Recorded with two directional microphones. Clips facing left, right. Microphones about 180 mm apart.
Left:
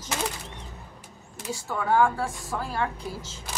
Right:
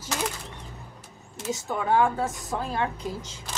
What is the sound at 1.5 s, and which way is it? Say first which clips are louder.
A woman's voice: right 1 dB; 20° right (ahead or behind).